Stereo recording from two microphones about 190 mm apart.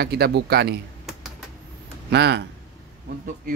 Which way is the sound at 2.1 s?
60° right (ahead or behind).